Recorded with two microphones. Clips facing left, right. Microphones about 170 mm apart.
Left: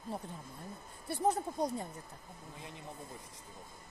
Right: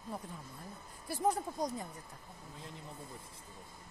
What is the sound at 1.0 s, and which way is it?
Speech, 25° left (ahead or behind).